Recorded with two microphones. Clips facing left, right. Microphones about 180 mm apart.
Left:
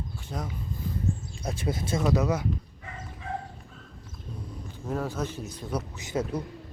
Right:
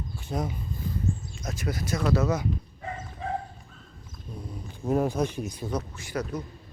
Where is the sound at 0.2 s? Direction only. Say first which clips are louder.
Right 6 dB; 10° right (ahead or behind).